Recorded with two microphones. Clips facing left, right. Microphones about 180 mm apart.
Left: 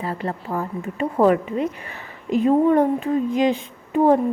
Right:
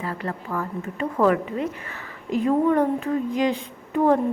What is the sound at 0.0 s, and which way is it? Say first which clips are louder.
A woman's voice: left 3 dB; 25° left (ahead or behind).